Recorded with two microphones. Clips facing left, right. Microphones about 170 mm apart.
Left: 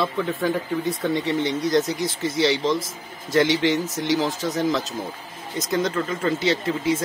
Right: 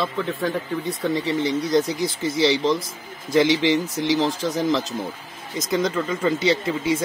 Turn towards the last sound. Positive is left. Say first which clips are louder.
# right 1 dB
turn(degrees=0)  # may be behind; listen again after turning